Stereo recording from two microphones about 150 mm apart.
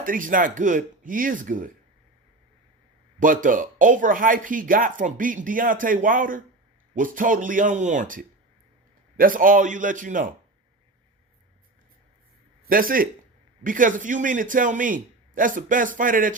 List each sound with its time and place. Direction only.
0.0 s speech: 65° right (ahead or behind)
3.2 s speech: 60° right (ahead or behind)
12.6 s speech: 70° right (ahead or behind)